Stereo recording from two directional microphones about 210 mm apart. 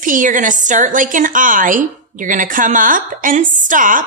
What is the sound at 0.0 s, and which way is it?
A woman's voice, 40° right (ahead or behind).